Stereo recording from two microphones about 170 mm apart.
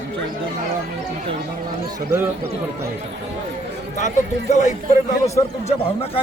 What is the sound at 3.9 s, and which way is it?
Speech, 45° left (ahead or behind).